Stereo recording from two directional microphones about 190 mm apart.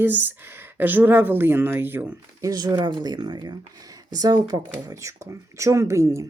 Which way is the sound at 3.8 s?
20° right (ahead or behind).